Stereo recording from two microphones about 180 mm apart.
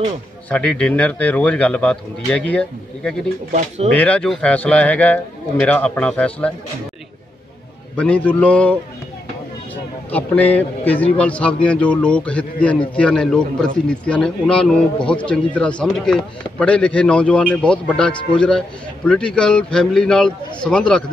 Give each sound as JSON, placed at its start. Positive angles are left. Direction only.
{"t": 0.5, "sound": "a man's voice", "side_deg": 5}
{"t": 3.5, "sound": "speech", "side_deg": -35}
{"t": 3.9, "sound": "a man's voice", "side_deg": 10}
{"t": 7.9, "sound": "a man's voice", "side_deg": 5}
{"t": 10.1, "sound": "a man's voice", "side_deg": 10}